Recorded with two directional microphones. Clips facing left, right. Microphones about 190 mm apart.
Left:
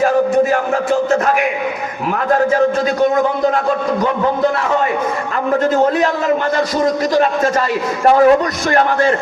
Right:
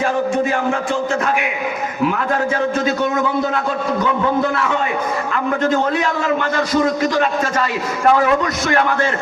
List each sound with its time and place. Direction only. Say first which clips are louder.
6.0 s a man's voice: left 3 dB; 40° left (ahead or behind)